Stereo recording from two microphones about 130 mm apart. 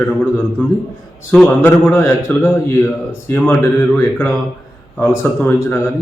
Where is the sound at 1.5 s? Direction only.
15° left (ahead or behind).